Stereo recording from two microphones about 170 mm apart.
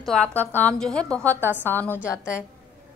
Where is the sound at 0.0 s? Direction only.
5° left (ahead or behind).